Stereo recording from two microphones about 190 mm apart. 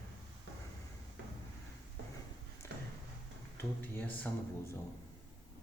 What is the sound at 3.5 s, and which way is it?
Speech, 10° left (ahead or behind).